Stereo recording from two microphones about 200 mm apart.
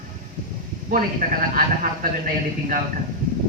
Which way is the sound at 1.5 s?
45° right (ahead or behind).